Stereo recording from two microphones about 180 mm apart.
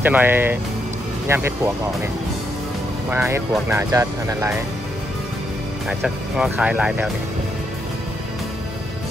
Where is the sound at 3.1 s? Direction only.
15° right (ahead or behind).